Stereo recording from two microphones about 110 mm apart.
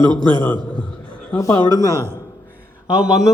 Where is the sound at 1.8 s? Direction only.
30° left (ahead or behind).